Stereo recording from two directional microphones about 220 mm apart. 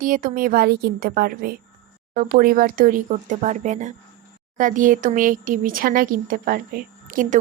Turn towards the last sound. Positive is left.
turn(degrees=-35)  # may be behind; listen again after turning